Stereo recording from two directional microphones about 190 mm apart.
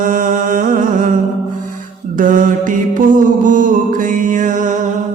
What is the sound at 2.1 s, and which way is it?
Mantra, 45° right (ahead or behind).